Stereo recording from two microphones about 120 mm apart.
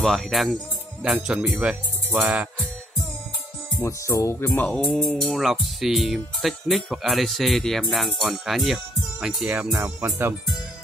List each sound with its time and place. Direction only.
0.0 s speech: centre (ahead or behind)
2.1 s music: 10° right (ahead or behind)
3.8 s speech: 20° left (ahead or behind)
4.6 s music: 5° left (ahead or behind)
5.2 s speech: centre (ahead or behind)
10.0 s speech: 20° right (ahead or behind)